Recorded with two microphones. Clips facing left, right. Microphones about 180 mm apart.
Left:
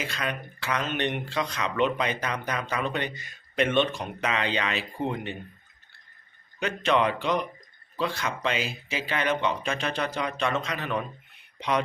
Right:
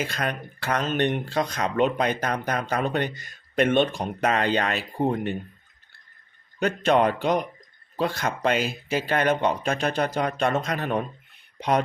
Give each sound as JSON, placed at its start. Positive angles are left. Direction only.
{"t": 0.0, "sound": "speech", "side_deg": -45}
{"t": 6.6, "sound": "speech", "side_deg": -45}